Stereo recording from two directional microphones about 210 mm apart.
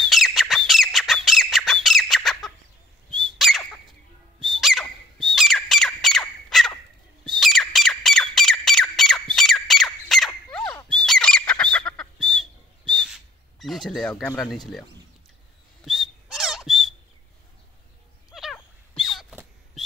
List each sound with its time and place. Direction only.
0.1 s squawk: centre (ahead or behind)
3.1 s bird: centre (ahead or behind)
4.4 s squawk: centre (ahead or behind)
10.9 s bird: 5° left (ahead or behind)
15.8 s whistling: centre (ahead or behind)
18.3 s a sound: centre (ahead or behind)